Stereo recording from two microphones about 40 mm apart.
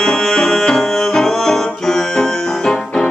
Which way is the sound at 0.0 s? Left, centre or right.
Centre.